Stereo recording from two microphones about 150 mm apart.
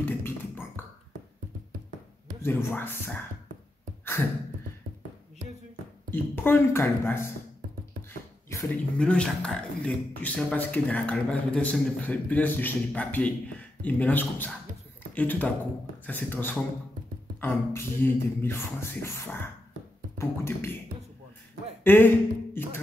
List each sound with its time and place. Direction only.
0.0 s beatboxing: 15° left (ahead or behind)
2.4 s speech: 15° left (ahead or behind)
6.0 s speech: 15° left (ahead or behind)
8.6 s speech: 5° left (ahead or behind)
21.8 s speech: 15° left (ahead or behind)